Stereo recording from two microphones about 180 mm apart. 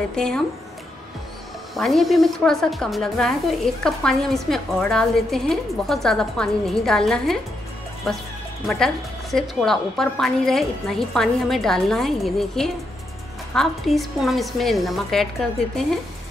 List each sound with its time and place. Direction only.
0.1 s a woman's voice: 5° left (ahead or behind)
1.8 s a woman's voice: centre (ahead or behind)